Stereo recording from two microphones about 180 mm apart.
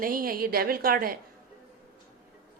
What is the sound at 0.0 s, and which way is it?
A woman's voice, 50° right (ahead or behind).